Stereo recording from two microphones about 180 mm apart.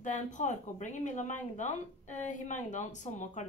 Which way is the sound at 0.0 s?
45° left (ahead or behind).